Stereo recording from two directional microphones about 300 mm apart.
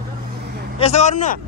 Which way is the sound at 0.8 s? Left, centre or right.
Left.